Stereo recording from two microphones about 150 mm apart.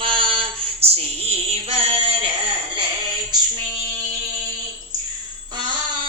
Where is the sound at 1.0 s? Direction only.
40° right (ahead or behind).